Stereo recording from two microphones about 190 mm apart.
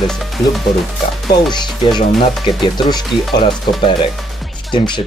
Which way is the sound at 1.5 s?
25° left (ahead or behind).